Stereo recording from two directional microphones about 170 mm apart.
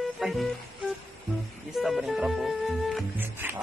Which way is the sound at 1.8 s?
Centre (ahead or behind).